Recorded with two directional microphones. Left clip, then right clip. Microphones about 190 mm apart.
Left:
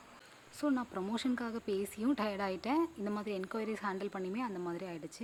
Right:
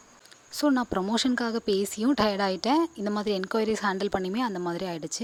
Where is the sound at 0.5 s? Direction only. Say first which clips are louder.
Right 10 dB; 45° right (ahead or behind).